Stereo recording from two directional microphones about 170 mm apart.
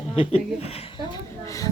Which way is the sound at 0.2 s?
35° left (ahead or behind).